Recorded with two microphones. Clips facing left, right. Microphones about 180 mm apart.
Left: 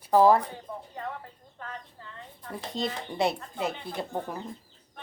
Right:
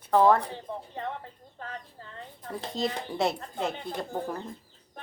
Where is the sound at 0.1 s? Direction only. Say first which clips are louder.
Left 1 dB; 5° left (ahead or behind).